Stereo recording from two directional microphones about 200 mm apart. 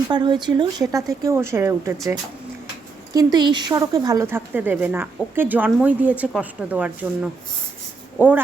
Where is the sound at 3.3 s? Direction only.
20° right (ahead or behind).